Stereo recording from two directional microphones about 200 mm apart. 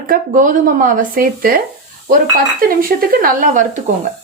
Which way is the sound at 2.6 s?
45° right (ahead or behind).